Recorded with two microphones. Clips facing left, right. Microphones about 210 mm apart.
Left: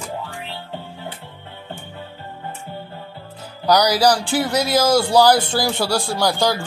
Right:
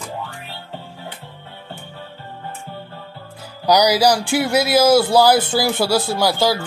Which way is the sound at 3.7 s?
10° right (ahead or behind).